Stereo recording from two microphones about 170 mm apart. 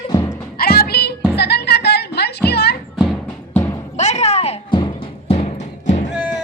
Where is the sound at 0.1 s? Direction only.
20° left (ahead or behind).